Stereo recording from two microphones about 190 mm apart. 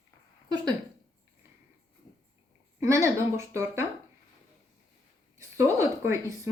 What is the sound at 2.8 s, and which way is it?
Speech, 15° right (ahead or behind).